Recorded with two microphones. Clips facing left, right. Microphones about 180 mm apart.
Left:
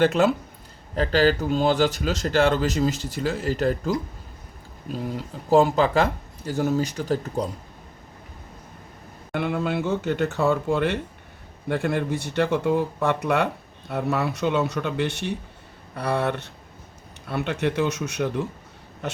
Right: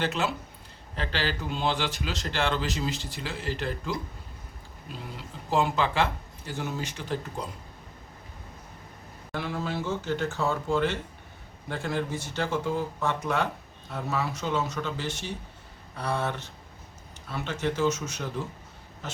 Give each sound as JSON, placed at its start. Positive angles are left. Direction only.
{"t": 0.0, "sound": "speech", "side_deg": 50}
{"t": 9.3, "sound": "speech", "side_deg": 60}
{"t": 19.0, "sound": "a sound", "side_deg": 65}